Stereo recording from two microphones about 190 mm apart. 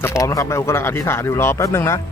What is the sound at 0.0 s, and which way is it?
Speech, 15° left (ahead or behind).